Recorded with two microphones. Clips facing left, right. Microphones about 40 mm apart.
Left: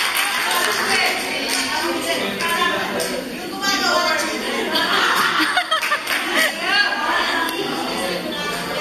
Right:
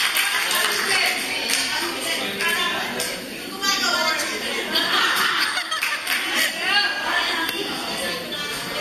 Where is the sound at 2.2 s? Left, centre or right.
Centre.